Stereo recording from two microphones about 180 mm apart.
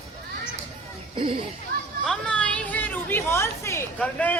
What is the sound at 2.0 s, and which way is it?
A woman's voice, 5° left (ahead or behind).